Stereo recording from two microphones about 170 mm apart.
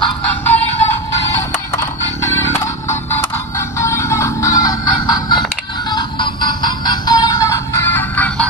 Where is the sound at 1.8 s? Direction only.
15° left (ahead or behind).